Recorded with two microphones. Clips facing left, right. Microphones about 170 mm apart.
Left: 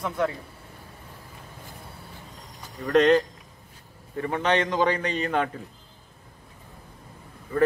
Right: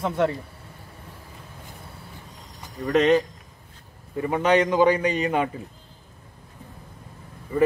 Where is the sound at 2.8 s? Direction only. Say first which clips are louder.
Even; 5° right (ahead or behind).